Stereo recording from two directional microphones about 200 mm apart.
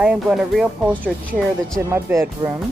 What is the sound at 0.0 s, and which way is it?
Speech, 5° right (ahead or behind).